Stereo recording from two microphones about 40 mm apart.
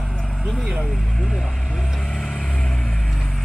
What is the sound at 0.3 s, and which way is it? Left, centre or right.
Vehicle, right.